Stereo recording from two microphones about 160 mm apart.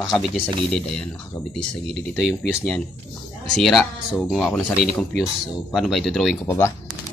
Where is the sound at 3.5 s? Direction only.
Centre (ahead or behind).